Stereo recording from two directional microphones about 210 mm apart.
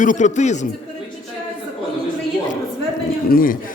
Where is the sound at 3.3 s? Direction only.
40° left (ahead or behind).